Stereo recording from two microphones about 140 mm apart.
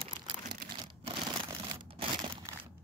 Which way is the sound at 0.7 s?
35° right (ahead or behind).